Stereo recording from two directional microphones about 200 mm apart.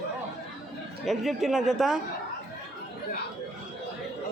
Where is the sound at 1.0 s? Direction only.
Centre (ahead or behind).